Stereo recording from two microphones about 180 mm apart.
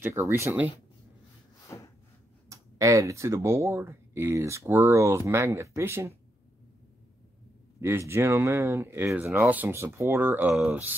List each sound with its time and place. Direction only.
0.0 s speech: 10° right (ahead or behind)
2.5 s speech: 15° right (ahead or behind)
7.8 s speech: 15° right (ahead or behind)
10.5 s speech: centre (ahead or behind)